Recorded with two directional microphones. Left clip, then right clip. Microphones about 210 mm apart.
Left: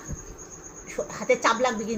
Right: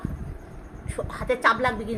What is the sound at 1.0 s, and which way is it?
Speech, 30° right (ahead or behind).